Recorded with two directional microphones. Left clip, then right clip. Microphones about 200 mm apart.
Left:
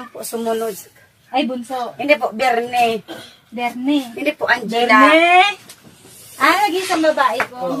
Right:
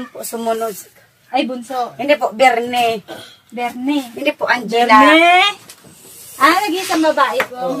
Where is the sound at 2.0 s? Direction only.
15° right (ahead or behind).